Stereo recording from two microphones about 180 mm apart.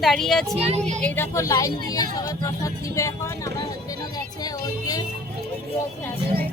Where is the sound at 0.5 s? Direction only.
35° right (ahead or behind).